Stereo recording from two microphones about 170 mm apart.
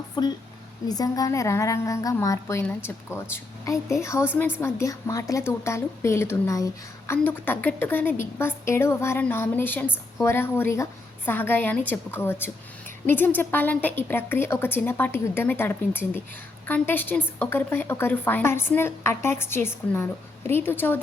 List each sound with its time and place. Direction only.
0.2 s a woman's voice: 25° left (ahead or behind)